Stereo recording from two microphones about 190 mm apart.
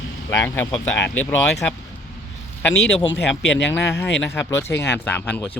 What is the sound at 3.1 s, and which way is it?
Speech, 75° left (ahead or behind).